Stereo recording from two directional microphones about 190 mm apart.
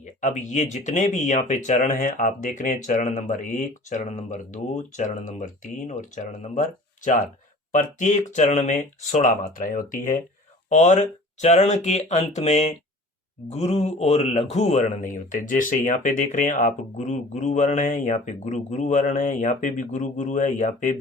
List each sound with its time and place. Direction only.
0.2 s a man's voice: 40° left (ahead or behind)